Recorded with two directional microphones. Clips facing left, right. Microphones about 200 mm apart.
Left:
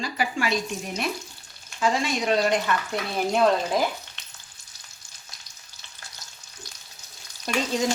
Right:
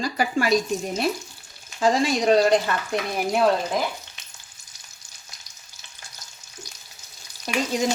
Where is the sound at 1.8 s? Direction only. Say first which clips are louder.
Right 4 dB; 35° right (ahead or behind).